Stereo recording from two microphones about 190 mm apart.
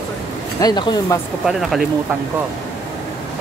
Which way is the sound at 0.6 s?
20° left (ahead or behind).